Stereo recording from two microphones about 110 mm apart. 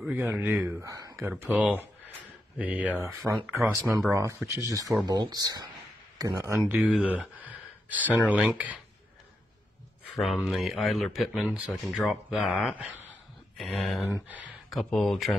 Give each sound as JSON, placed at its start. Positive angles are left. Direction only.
{"t": 0.1, "sound": "a man's voice", "side_deg": -15}
{"t": 0.7, "sound": "speech", "side_deg": -30}
{"t": 1.4, "sound": "a man's voice", "side_deg": -10}
{"t": 3.7, "sound": "speech", "side_deg": 0}
{"t": 4.1, "sound": "speech", "side_deg": -25}
{"t": 6.7, "sound": "speech", "side_deg": -10}
{"t": 10.1, "sound": "speech", "side_deg": 0}
{"t": 11.4, "sound": "a man's voice", "side_deg": -15}
{"t": 13.6, "sound": "speech", "side_deg": 5}
{"t": 14.0, "sound": "a man's voice", "side_deg": -15}
{"t": 14.7, "sound": "speech", "side_deg": 0}